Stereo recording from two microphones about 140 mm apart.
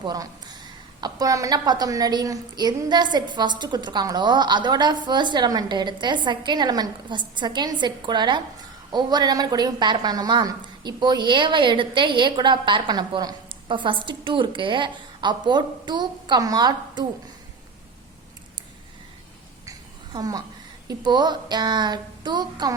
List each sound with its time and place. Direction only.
0.0 s a woman's voice: 30° right (ahead or behind)
20.1 s a woman's voice: 30° right (ahead or behind)